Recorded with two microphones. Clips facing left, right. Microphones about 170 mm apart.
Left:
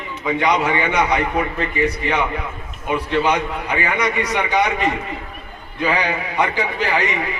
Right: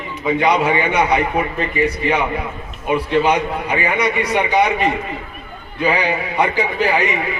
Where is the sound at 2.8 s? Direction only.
15° right (ahead or behind).